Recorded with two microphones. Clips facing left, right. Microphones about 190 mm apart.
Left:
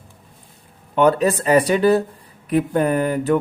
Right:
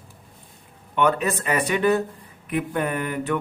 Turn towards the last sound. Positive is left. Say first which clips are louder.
# left 7 dB
turn(degrees=35)  # may be behind; listen again after turning